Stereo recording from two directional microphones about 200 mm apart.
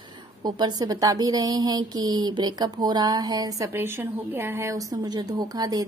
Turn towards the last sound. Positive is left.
turn(degrees=-20)  # may be behind; listen again after turning